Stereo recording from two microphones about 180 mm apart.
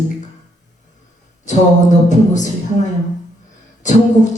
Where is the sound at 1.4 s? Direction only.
40° left (ahead or behind).